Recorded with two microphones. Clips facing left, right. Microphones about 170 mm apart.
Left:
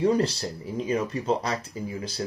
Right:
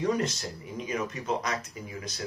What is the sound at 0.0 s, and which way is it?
Speech, 30° left (ahead or behind).